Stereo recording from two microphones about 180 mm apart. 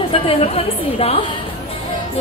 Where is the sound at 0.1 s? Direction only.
30° left (ahead or behind).